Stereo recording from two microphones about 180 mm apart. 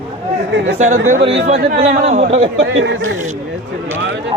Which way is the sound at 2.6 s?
90° right.